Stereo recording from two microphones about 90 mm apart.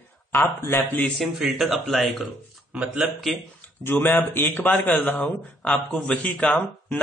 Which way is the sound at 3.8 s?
25° left (ahead or behind).